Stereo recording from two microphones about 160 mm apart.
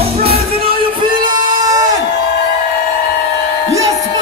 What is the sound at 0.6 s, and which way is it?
Music, 30° right (ahead or behind).